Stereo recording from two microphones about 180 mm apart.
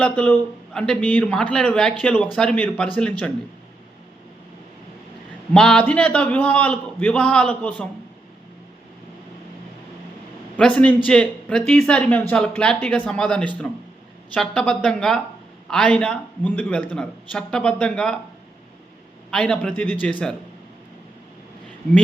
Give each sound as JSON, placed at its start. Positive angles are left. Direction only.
{"t": 0.0, "sound": "a man's voice", "side_deg": 5}
{"t": 5.5, "sound": "a man's voice", "side_deg": 5}
{"t": 10.6, "sound": "a man's voice", "side_deg": 5}
{"t": 19.3, "sound": "a man's voice", "side_deg": 5}